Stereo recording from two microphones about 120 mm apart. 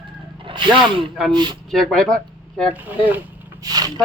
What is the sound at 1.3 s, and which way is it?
Speech, 40° right (ahead or behind).